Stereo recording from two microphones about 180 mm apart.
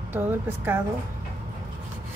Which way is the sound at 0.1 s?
10° right (ahead or behind).